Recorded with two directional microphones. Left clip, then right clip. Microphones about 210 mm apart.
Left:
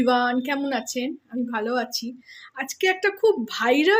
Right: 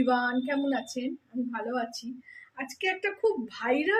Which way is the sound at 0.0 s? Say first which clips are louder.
Left 6 dB; 45° left (ahead or behind).